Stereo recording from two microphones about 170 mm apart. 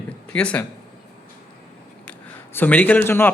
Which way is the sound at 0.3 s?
5° left (ahead or behind).